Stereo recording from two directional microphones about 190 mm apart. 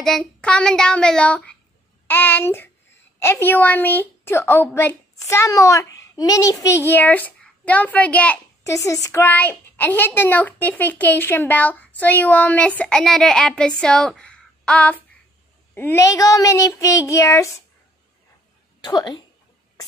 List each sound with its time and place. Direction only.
0.0 s child singing: 5° left (ahead or behind)
2.0 s a woman's voice: 10° left (ahead or behind)
18.8 s speech: 20° left (ahead or behind)